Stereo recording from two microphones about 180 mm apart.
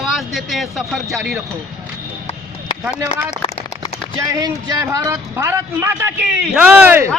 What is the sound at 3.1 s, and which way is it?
Speech, 40° left (ahead or behind).